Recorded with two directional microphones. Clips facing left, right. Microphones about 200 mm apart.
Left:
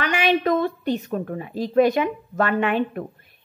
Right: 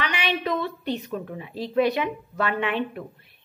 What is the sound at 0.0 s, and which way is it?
Speech, 45° left (ahead or behind).